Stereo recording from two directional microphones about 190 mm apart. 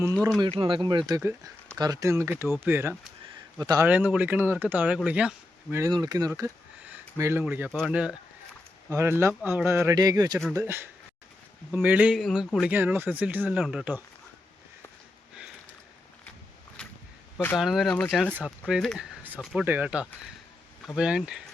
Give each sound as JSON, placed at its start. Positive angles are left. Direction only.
{"t": 0.0, "sound": "speech", "side_deg": -15}
{"t": 0.3, "sound": "speech", "side_deg": -25}
{"t": 3.8, "sound": "speech", "side_deg": -5}
{"t": 5.7, "sound": "speech", "side_deg": -20}
{"t": 17.6, "sound": "speech", "side_deg": 0}